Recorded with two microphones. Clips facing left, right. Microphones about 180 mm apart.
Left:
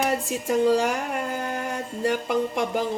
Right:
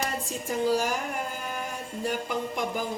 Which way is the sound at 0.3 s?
70° left (ahead or behind).